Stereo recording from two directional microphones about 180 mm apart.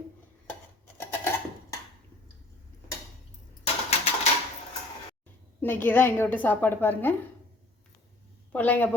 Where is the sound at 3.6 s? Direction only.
35° left (ahead or behind).